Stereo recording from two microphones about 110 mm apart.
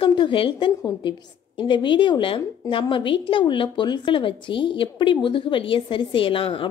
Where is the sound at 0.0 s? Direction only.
50° left (ahead or behind).